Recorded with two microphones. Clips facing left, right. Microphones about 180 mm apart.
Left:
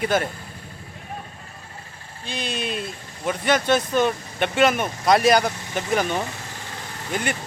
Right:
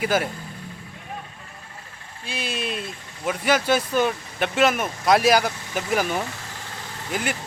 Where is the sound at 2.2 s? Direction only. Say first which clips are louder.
Left 1 dB; 5° right (ahead or behind).